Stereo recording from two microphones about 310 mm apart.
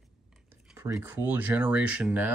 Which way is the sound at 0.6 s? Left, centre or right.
Centre.